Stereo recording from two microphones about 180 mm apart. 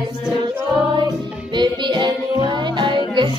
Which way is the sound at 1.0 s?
25° right (ahead or behind).